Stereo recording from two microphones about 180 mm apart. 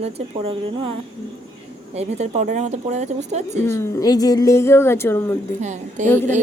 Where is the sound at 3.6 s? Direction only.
15° left (ahead or behind).